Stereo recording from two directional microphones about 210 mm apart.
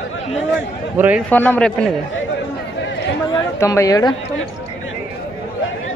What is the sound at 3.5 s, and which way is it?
Speech, 15° left (ahead or behind).